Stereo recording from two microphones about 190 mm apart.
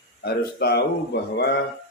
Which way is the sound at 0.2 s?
55° left (ahead or behind).